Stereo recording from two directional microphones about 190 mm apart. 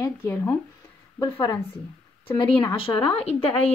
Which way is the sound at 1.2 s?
25° left (ahead or behind).